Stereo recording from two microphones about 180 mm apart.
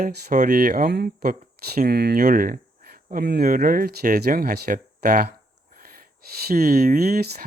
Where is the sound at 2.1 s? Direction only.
50° right (ahead or behind).